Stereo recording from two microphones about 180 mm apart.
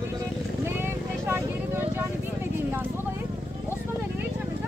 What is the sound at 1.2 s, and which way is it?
Vehicle, 15° right (ahead or behind).